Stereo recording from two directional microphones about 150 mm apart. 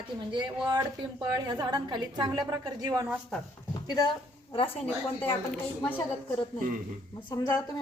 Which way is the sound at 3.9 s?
25° left (ahead or behind).